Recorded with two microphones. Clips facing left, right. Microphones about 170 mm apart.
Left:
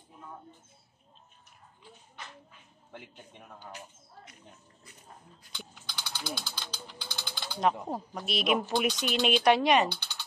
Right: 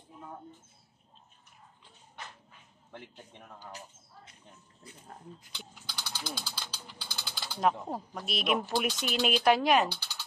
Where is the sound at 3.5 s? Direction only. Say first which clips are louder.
Left 1 dB; 30° right (ahead or behind).